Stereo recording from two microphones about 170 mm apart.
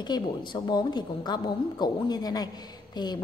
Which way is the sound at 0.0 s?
25° left (ahead or behind).